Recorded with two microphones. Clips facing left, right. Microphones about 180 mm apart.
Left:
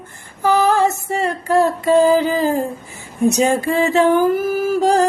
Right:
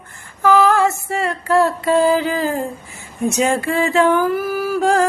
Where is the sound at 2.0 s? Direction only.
45° left (ahead or behind).